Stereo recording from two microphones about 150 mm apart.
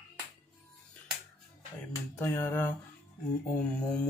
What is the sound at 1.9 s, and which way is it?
Speech, 15° left (ahead or behind).